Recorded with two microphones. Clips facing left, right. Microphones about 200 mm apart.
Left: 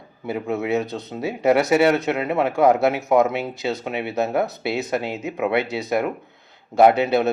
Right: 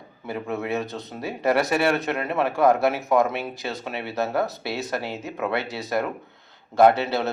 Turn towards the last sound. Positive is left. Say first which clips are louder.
# left 3 dB
turn(degrees=20)  # may be behind; listen again after turning